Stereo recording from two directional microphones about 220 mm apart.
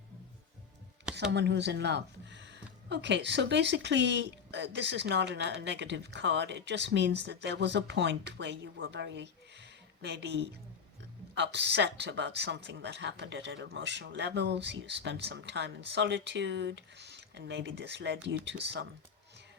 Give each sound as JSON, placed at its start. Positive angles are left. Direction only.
{"t": 1.3, "sound": "speech", "side_deg": -50}